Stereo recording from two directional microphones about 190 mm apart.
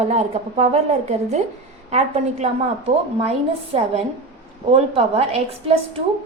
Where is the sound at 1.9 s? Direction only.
35° right (ahead or behind).